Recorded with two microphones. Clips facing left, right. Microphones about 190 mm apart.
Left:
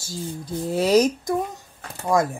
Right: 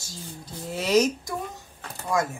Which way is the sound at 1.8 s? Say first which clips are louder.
Left 5 dB; 40° left (ahead or behind).